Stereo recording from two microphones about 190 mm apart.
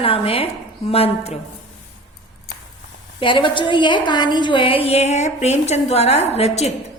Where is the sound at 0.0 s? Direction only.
30° left (ahead or behind).